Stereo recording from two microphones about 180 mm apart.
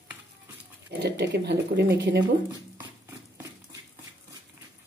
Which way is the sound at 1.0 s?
70° right (ahead or behind).